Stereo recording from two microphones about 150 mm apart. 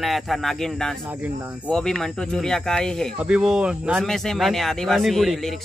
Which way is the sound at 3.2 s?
5° right (ahead or behind).